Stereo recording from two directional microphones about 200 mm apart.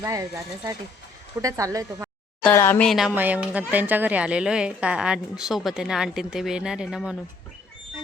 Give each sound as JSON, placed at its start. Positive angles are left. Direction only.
{"t": 0.0, "sound": "speech", "side_deg": -15}
{"t": 2.4, "sound": "speech", "side_deg": 10}